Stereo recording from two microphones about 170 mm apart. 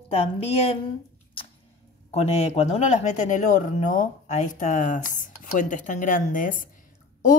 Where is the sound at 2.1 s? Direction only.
40° left (ahead or behind).